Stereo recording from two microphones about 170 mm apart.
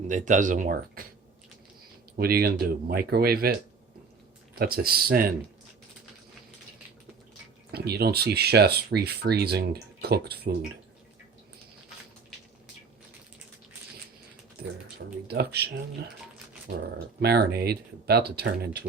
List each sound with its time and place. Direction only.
0.1 s speech: 45° right (ahead or behind)
2.1 s speech: 65° right (ahead or behind)
4.5 s speech: 65° right (ahead or behind)
7.7 s speech: 70° right (ahead or behind)
14.9 s speech: 70° right (ahead or behind)
17.2 s speech: 70° right (ahead or behind)